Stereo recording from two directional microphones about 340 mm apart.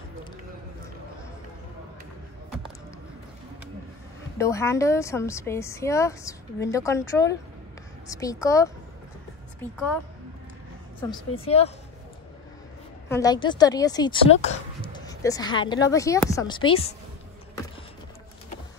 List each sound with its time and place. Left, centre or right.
4.4 s speech: centre
11.0 s speech: centre
13.1 s speech: centre